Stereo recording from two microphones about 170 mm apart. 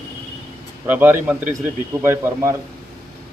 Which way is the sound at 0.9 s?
10° right (ahead or behind).